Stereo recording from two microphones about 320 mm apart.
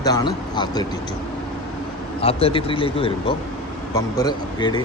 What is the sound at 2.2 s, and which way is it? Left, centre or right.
Speech, centre.